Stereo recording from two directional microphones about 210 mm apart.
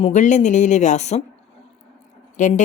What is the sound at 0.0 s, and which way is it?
Speech, 35° left (ahead or behind).